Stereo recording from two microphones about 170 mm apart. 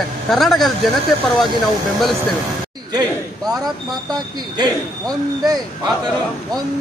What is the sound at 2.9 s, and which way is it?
Speech, 25° right (ahead or behind).